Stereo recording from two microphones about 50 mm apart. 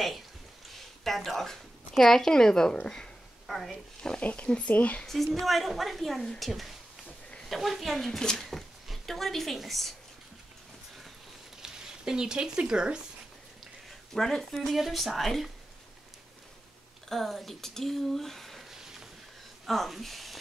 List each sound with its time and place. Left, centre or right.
0.7 s speech: centre
3.4 s speech: centre
4.2 s speech: left
5.0 s speech: centre
11.6 s speech: centre
13.8 s speech: centre
17.1 s speech: centre